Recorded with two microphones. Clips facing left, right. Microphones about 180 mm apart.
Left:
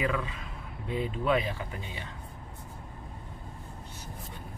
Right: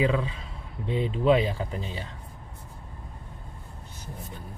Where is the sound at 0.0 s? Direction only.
25° right (ahead or behind).